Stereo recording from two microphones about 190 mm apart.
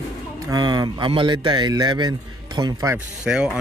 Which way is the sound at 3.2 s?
5° right (ahead or behind).